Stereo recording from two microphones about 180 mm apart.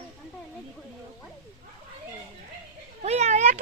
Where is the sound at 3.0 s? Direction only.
40° right (ahead or behind).